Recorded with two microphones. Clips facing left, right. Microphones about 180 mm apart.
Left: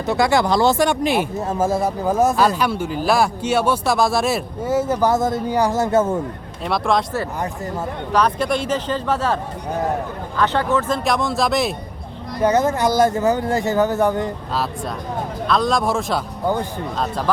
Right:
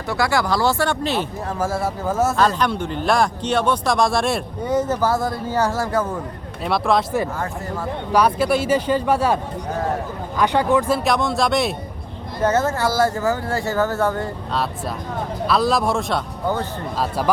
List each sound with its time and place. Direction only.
0.0 s speech: 20° left (ahead or behind)
6.7 s speech: centre (ahead or behind)
8.1 s speech: 10° right (ahead or behind)
12.4 s speech: 15° left (ahead or behind)
15.4 s speech: 5° right (ahead or behind)
17.0 s speech: 10° right (ahead or behind)